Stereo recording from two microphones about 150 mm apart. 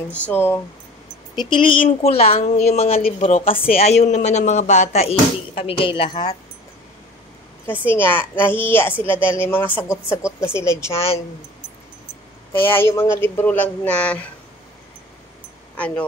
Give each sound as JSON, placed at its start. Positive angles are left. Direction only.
{"t": 0.1, "sound": "speech", "side_deg": 10}
{"t": 1.3, "sound": "speech", "side_deg": 30}
{"t": 7.6, "sound": "speech", "side_deg": 15}
{"t": 9.0, "sound": "speech", "side_deg": -35}
{"t": 9.5, "sound": "speech", "side_deg": 10}
{"t": 10.6, "sound": "speech", "side_deg": -30}
{"t": 10.9, "sound": "speech", "side_deg": 20}
{"t": 12.5, "sound": "speech", "side_deg": 15}
{"t": 15.7, "sound": "speech", "side_deg": 10}